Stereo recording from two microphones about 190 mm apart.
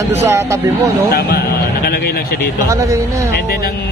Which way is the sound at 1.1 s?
55° left (ahead or behind).